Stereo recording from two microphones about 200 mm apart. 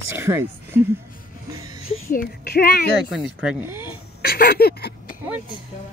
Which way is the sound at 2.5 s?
50° left (ahead or behind).